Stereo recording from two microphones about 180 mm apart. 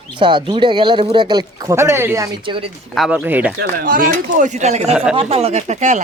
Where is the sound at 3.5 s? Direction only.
50° right (ahead or behind).